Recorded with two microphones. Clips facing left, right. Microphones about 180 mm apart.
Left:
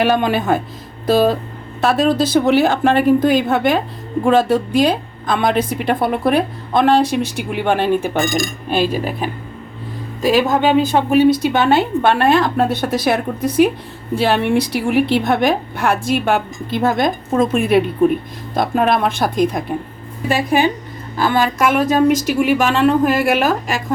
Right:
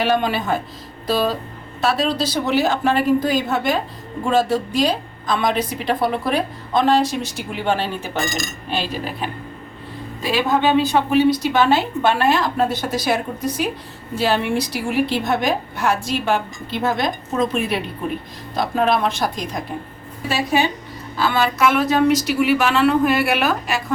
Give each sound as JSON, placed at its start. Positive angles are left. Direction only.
{"t": 0.0, "sound": "a woman's voice", "side_deg": 50}
{"t": 10.2, "sound": "a woman's voice", "side_deg": 45}